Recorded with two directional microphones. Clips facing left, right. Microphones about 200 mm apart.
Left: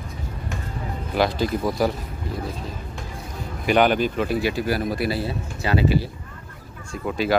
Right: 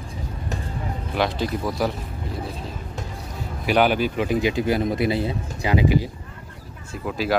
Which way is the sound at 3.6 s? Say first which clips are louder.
Left 1 dB; 5° right (ahead or behind).